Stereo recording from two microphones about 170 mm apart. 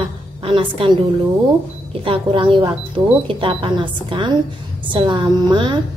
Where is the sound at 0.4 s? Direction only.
30° right (ahead or behind).